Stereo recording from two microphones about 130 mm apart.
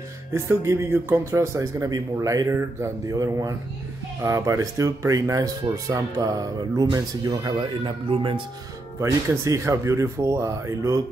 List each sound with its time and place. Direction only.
0.3 s speech: 20° right (ahead or behind); by 8.4 s 45° right (ahead or behind)
9.0 s speech: 25° right (ahead or behind)